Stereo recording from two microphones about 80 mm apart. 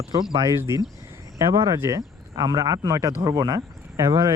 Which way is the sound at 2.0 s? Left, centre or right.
Right.